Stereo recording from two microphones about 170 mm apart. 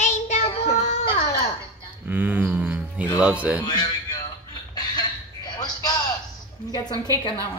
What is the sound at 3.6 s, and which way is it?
Speech, 25° left (ahead or behind).